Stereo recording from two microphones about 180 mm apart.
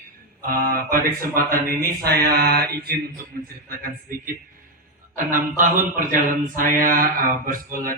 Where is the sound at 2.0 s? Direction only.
60° right (ahead or behind).